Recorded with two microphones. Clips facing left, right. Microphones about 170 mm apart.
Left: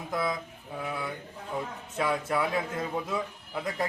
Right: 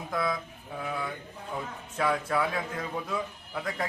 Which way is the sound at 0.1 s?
5° left (ahead or behind).